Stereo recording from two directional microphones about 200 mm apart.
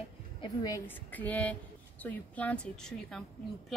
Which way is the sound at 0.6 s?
15° left (ahead or behind).